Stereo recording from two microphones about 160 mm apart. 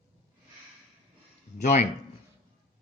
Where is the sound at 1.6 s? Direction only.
50° left (ahead or behind).